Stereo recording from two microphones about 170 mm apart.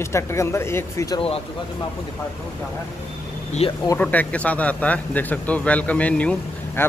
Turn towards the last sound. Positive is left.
turn(degrees=15)  # may be behind; listen again after turning